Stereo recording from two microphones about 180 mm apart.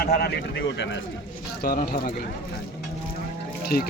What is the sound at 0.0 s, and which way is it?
Speech, 60° left (ahead or behind).